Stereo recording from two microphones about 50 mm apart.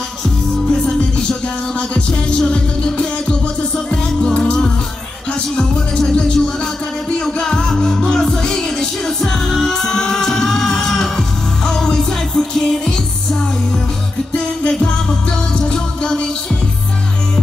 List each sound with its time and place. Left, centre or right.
0.2 s music: centre
15.5 s music: centre